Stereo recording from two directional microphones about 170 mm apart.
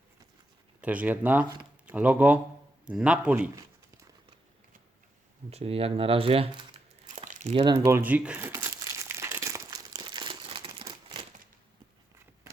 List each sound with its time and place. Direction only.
0.8 s a man's voice: 10° right (ahead or behind)
3.5 s a sound: 20° right (ahead or behind)
5.5 s speech: 35° right (ahead or behind)
7.2 s crumpling: 45° right (ahead or behind)
7.6 s speech: 25° right (ahead or behind)
7.9 s crumpling: 10° right (ahead or behind); by 11.3 s 30° right (ahead or behind)